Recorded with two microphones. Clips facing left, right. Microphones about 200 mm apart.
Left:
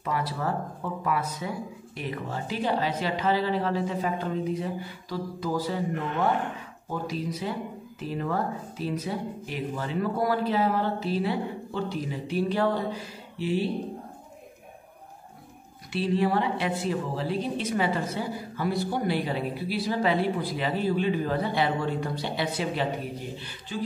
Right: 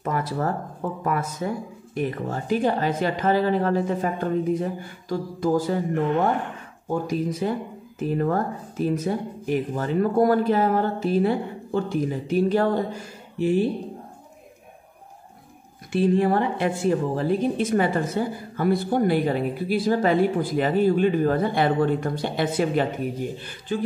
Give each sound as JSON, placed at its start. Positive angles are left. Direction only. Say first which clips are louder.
{"t": 0.0, "sound": "a sound", "louder": "right 4 dB", "side_deg": -50}
{"t": 1.0, "sound": "a woman's voice", "louder": "right 3 dB", "side_deg": -45}
{"t": 6.9, "sound": "a woman's voice", "louder": "right 6 dB", "side_deg": -50}
{"t": 15.9, "sound": "a woman's voice", "louder": "right 5 dB", "side_deg": -50}